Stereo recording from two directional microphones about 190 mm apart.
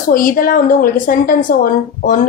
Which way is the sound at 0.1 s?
50° left (ahead or behind).